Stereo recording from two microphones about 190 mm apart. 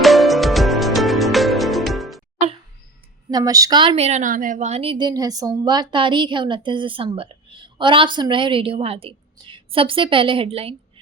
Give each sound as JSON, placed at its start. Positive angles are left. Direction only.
{"t": 0.0, "sound": "music", "side_deg": 0}
{"t": 3.2, "sound": "a woman's voice", "side_deg": -20}